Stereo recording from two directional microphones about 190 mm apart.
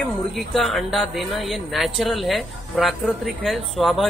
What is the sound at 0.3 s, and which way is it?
Speech, centre (ahead or behind).